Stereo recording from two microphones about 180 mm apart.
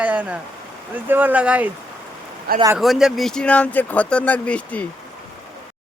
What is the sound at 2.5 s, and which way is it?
Speech, 60° right (ahead or behind).